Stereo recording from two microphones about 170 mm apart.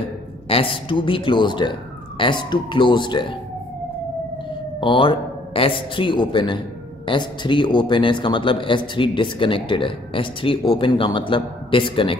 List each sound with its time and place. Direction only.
0.5 s a man's voice: 30° left (ahead or behind)
4.7 s a man's voice: 30° left (ahead or behind)